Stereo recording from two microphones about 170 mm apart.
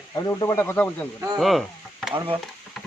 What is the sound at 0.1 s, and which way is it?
Speech, 20° left (ahead or behind).